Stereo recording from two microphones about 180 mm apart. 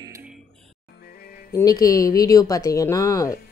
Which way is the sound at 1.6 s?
20° left (ahead or behind).